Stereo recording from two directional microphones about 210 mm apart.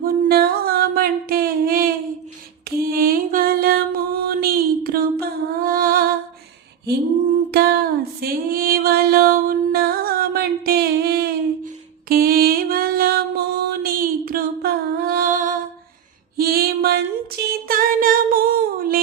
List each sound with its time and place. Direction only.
0.0 s a sound: 45° right (ahead or behind)
2.6 s mantra: 45° right (ahead or behind)
7.5 s music: 45° right (ahead or behind)
12.0 s mantra: 45° right (ahead or behind)
16.4 s music: 45° right (ahead or behind)